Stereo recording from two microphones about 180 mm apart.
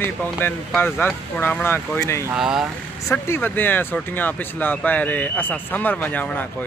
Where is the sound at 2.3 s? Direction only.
5° right (ahead or behind).